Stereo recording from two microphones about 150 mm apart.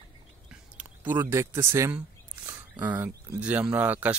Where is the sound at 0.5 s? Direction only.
10° right (ahead or behind).